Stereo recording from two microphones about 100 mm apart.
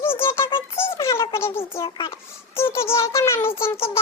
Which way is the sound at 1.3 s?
25° left (ahead or behind).